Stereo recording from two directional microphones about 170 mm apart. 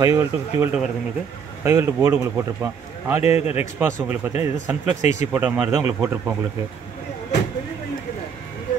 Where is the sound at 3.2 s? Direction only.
35° left (ahead or behind).